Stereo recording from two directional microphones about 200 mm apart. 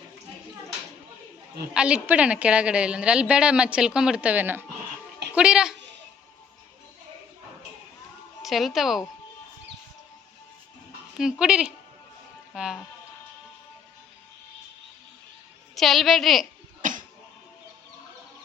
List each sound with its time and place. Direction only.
1.7 s a woman's voice: 5° right (ahead or behind)
8.4 s a woman's voice: centre (ahead or behind)
11.2 s a woman's voice: 5° right (ahead or behind)
15.7 s a woman's voice: centre (ahead or behind)
16.8 s a sound: 40° right (ahead or behind)